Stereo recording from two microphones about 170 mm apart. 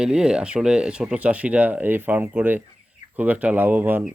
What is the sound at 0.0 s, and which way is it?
Speech, 5° right (ahead or behind).